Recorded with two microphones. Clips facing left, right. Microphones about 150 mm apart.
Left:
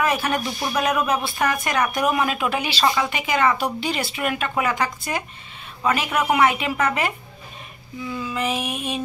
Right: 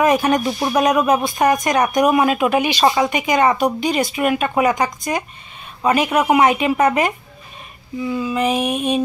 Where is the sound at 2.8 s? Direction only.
40° right (ahead or behind).